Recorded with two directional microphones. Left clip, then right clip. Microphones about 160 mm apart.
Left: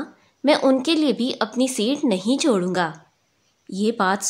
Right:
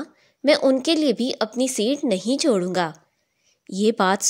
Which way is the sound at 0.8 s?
35° right (ahead or behind).